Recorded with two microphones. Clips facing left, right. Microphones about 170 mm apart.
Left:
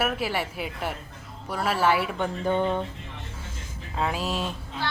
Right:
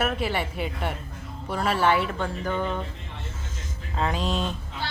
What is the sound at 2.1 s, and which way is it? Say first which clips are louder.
Speech: left 3 dB; 20° left (ahead or behind).